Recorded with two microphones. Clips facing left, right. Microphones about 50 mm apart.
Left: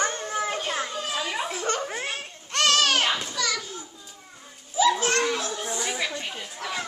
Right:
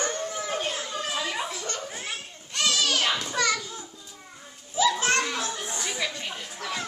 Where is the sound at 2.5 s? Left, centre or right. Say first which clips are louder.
Left 4 dB; left.